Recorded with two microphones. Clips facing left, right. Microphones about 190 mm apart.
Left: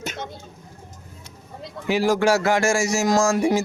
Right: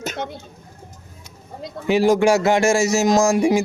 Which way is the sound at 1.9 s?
20° right (ahead or behind).